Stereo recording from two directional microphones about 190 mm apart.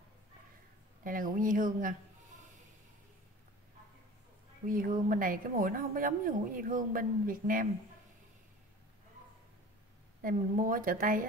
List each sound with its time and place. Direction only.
1.0 s a woman's voice: 45° right (ahead or behind)
4.6 s a woman's voice: 45° right (ahead or behind)
10.2 s a woman's voice: 45° right (ahead or behind)